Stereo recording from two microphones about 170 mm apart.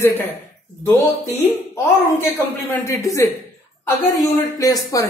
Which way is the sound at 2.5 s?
15° left (ahead or behind).